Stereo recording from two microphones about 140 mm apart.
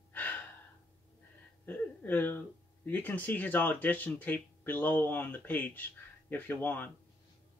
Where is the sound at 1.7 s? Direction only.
15° left (ahead or behind).